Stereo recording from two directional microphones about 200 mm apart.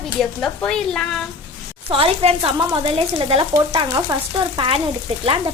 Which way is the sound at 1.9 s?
30° right (ahead or behind).